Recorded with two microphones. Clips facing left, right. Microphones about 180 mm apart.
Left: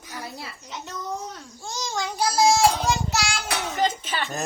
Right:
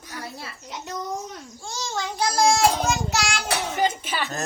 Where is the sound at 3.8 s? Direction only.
10° right (ahead or behind).